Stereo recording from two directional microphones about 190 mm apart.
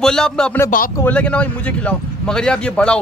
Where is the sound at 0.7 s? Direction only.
45° left (ahead or behind).